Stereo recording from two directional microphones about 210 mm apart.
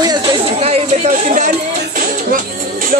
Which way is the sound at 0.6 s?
30° right (ahead or behind).